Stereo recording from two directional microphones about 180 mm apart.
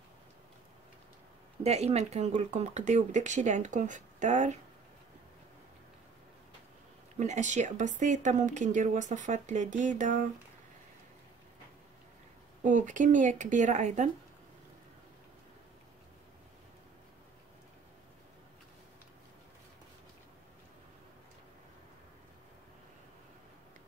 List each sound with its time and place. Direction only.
1.6 s speech: 35° right (ahead or behind)
7.2 s speech: 40° right (ahead or behind)
12.6 s speech: 45° right (ahead or behind)